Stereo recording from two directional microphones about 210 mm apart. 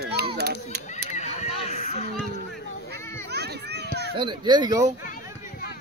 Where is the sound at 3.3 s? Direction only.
50° right (ahead or behind).